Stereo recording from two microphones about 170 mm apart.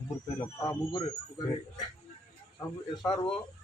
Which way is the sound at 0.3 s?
20° left (ahead or behind).